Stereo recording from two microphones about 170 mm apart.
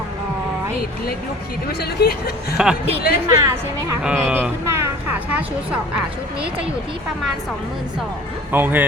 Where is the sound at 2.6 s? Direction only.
5° right (ahead or behind).